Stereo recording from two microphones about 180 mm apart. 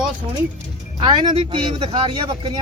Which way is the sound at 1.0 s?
25° right (ahead or behind).